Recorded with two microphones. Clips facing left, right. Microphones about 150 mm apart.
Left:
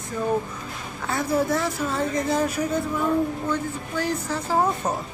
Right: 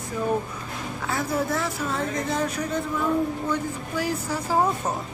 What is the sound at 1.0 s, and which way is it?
Speech, centre (ahead or behind).